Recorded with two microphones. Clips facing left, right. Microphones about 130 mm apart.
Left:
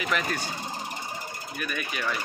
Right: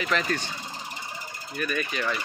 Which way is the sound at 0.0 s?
15° left (ahead or behind).